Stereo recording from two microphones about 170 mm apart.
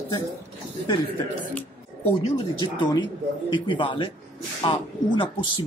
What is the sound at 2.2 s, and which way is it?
Speech, 30° left (ahead or behind).